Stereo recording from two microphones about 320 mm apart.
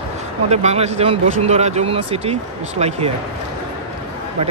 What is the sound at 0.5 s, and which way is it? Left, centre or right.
Speech, centre.